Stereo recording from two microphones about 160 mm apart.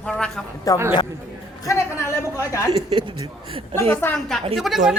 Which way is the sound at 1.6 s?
15° left (ahead or behind).